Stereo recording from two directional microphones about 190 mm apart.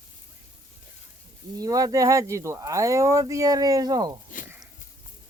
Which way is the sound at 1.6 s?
20° right (ahead or behind).